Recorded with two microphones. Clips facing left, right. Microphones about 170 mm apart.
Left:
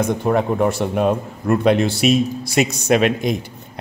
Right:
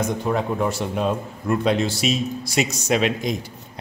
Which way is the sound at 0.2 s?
60° left (ahead or behind).